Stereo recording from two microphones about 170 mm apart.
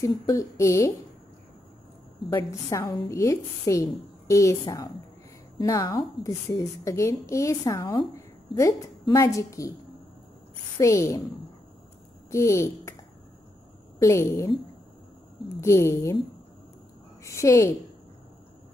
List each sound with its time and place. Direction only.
0.0 s a woman's voice: 20° left (ahead or behind)
2.2 s a woman's voice: 20° left (ahead or behind)
10.8 s a woman's voice: 20° left (ahead or behind)
12.3 s a woman's voice: 15° left (ahead or behind)
13.9 s a woman's voice: 15° left (ahead or behind)
15.6 s a woman's voice: 15° left (ahead or behind)
17.2 s a woman's voice: 15° left (ahead or behind)